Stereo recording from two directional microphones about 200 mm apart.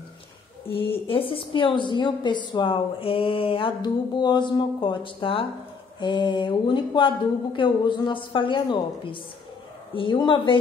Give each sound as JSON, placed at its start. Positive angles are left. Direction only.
{"t": 0.8, "sound": "a woman's voice", "side_deg": 25}